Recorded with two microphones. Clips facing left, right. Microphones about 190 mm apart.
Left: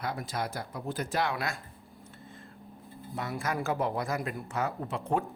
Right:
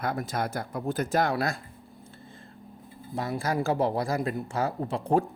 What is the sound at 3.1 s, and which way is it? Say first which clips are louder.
Speech: right 5 dB; 35° right (ahead or behind).